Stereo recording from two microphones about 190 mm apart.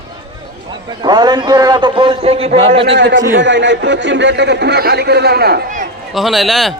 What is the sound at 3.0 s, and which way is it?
A man's voice, 70° right (ahead or behind).